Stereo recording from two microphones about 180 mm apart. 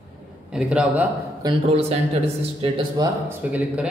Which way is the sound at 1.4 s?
35° right (ahead or behind).